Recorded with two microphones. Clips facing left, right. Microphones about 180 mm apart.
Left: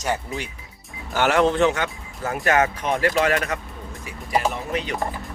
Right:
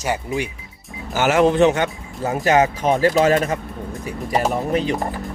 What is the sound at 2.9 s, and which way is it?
Speech, 30° right (ahead or behind).